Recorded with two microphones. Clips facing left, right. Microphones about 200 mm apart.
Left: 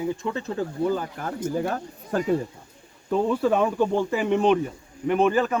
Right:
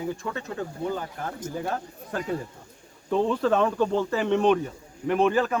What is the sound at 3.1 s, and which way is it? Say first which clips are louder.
Speech: left 1 dB; 10° left (ahead or behind).